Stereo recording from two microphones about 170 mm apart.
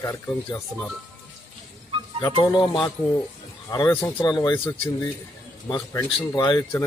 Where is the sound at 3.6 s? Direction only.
20° left (ahead or behind).